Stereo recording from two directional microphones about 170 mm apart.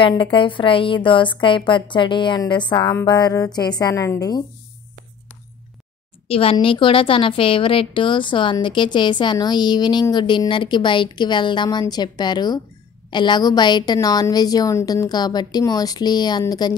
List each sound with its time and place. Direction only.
0.0 s a woman's voice: 30° left (ahead or behind)
6.2 s a woman's voice: 35° left (ahead or behind)